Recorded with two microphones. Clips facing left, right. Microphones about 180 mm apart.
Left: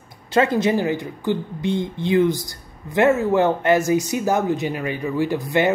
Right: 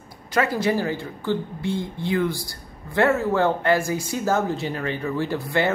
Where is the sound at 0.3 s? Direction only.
25° left (ahead or behind).